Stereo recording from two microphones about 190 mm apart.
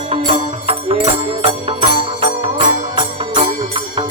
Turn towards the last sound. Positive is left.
turn(degrees=-35)  # may be behind; listen again after turning